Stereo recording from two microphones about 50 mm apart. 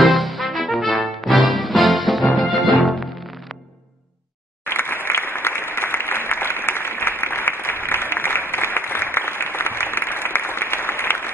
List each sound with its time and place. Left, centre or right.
0.0 s music: centre
4.6 s applause: left